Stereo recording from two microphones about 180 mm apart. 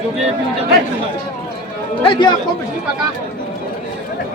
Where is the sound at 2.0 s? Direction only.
25° left (ahead or behind).